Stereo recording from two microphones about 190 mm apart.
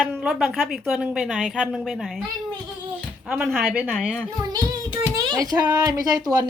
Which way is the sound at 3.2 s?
Centre (ahead or behind).